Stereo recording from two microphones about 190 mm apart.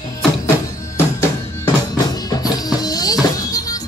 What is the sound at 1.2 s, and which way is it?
Music, 20° left (ahead or behind).